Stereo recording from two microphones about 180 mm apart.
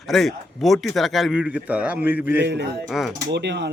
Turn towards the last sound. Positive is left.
turn(degrees=-70)  # may be behind; listen again after turning